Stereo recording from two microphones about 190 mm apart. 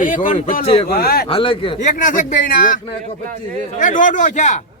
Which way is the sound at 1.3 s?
25° left (ahead or behind).